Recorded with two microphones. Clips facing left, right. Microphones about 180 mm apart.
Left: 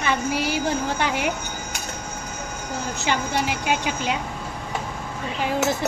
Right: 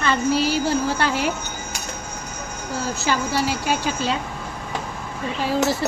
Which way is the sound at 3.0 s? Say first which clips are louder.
Right 1 dB; 20° left (ahead or behind).